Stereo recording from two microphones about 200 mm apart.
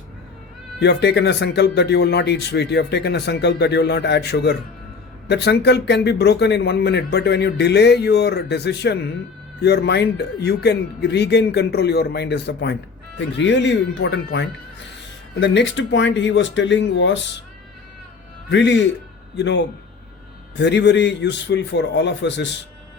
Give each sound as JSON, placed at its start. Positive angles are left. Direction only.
{"t": 0.8, "sound": "speech", "side_deg": 60}
{"t": 18.5, "sound": "speech", "side_deg": 60}